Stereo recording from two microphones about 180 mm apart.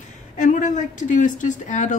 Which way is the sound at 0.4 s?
45° left (ahead or behind).